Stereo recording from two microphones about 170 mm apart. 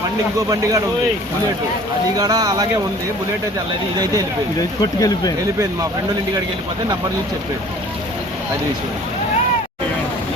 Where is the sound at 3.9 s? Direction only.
20° right (ahead or behind).